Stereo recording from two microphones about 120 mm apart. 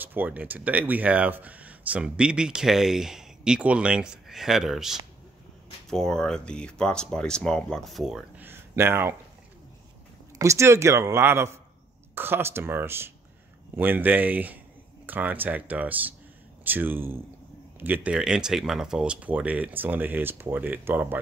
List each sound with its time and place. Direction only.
0.0 s speech: 15° right (ahead or behind); by 8.2 s centre (ahead or behind)
8.4 s a sound: 20° right (ahead or behind)
10.4 s speech: 25° right (ahead or behind)